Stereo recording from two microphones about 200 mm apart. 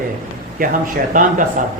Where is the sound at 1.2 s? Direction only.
40° right (ahead or behind).